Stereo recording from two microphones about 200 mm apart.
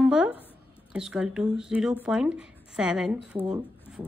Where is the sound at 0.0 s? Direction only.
5° right (ahead or behind).